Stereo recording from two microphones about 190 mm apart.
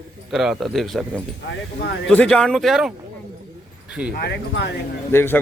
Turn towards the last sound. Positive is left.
turn(degrees=10)  # may be behind; listen again after turning